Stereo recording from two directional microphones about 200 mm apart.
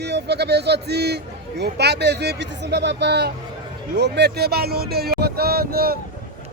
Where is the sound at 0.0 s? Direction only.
55° right (ahead or behind).